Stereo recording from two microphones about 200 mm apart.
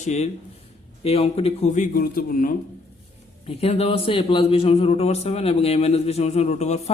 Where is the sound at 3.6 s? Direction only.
30° left (ahead or behind).